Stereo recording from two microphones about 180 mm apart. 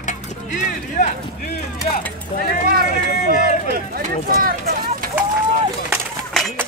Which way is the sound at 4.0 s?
55° right (ahead or behind).